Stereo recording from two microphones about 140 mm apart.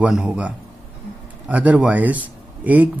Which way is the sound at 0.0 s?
5° right (ahead or behind).